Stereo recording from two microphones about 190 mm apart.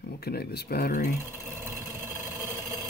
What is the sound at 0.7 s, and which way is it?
Speech, 50° left (ahead or behind).